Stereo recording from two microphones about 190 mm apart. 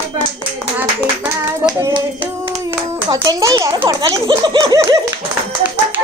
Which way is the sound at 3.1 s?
20° right (ahead or behind).